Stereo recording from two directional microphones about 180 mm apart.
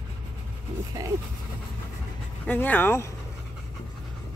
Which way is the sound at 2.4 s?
10° left (ahead or behind).